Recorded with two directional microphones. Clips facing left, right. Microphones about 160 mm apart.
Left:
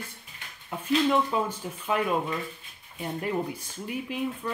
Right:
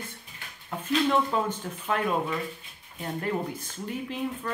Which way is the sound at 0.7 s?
10° left (ahead or behind).